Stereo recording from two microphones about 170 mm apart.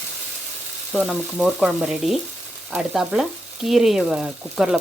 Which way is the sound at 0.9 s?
5° right (ahead or behind).